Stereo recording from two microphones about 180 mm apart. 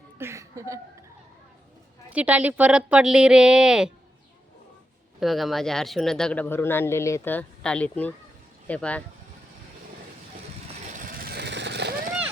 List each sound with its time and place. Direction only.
0.2 s chuckle: 15° right (ahead or behind)
2.0 s speech: 10° right (ahead or behind)
5.2 s speech: centre (ahead or behind)
10.9 s vehicle: 50° right (ahead or behind)